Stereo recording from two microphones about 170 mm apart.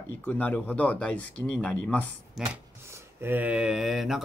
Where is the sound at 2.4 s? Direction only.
Centre (ahead or behind).